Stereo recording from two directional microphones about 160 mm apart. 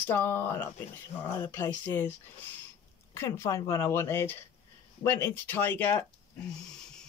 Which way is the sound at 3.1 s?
15° left (ahead or behind).